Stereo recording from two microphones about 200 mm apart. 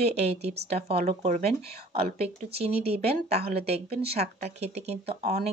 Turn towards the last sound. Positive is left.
turn(degrees=-30)  # may be behind; listen again after turning